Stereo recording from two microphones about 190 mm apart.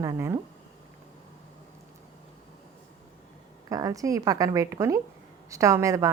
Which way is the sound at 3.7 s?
20° right (ahead or behind).